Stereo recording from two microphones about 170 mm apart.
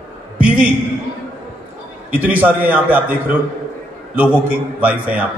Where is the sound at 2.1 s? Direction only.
10° right (ahead or behind).